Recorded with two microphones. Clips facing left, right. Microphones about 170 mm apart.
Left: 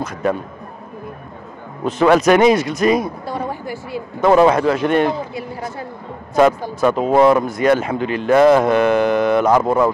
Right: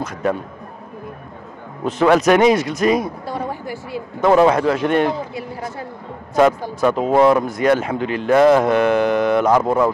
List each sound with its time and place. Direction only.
0.0 s speech: 15° left (ahead or behind)
1.9 s speech: 15° left (ahead or behind)
3.0 s speech: 25° left (ahead or behind)
6.3 s speech: 15° left (ahead or behind)